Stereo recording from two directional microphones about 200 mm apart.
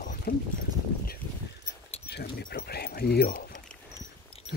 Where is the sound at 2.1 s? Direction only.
55° left (ahead or behind).